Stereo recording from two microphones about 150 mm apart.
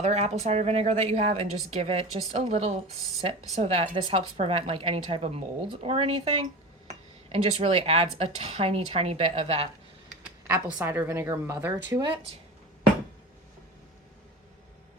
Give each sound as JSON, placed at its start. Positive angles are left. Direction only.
{"t": 0.0, "sound": "a woman's voice", "side_deg": -45}
{"t": 10.4, "sound": "a woman's voice", "side_deg": -15}
{"t": 11.9, "sound": "a woman's voice", "side_deg": -30}